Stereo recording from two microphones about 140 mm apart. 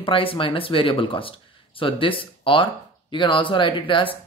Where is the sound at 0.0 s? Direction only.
40° left (ahead or behind).